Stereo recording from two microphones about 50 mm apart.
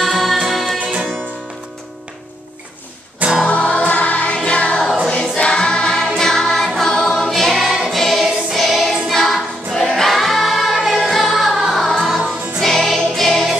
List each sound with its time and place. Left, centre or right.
0.0 s music: centre
3.4 s music: left; by 7.8 s centre
7.9 s choir: centre
9.9 s music: centre